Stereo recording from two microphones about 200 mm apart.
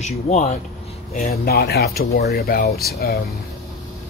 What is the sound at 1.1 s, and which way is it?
Speech, 50° left (ahead or behind).